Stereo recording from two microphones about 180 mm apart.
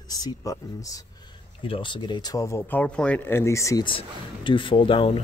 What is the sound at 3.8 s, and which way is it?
Speech, 30° left (ahead or behind).